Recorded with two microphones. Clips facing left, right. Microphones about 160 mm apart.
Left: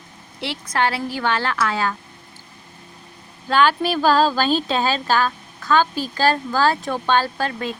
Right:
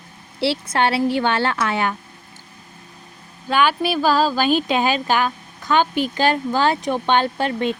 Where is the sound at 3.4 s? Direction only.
10° right (ahead or behind).